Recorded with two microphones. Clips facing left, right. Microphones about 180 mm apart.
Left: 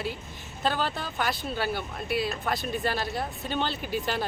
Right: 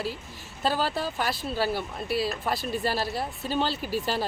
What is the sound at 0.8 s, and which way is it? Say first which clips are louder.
Speech: right 3 dB; 35° right (ahead or behind).